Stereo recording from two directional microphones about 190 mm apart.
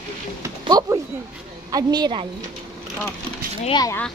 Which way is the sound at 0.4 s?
20° right (ahead or behind).